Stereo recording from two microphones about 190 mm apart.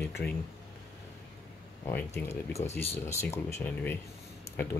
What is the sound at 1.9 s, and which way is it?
Speech, 10° left (ahead or behind).